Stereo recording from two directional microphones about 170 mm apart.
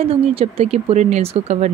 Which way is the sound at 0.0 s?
35° right (ahead or behind).